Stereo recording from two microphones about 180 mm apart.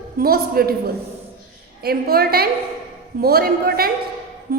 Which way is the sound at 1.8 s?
60° right (ahead or behind).